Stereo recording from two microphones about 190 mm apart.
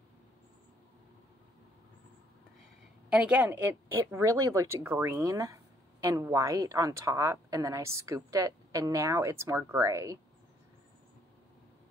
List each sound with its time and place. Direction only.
3.1 s speech: 5° right (ahead or behind)